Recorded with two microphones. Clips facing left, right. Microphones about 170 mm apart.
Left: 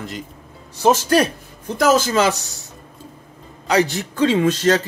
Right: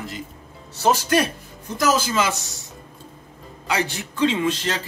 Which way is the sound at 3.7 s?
40° left (ahead or behind).